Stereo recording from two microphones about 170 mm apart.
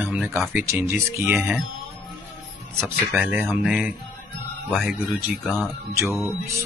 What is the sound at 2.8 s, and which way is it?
Speech, 5° right (ahead or behind).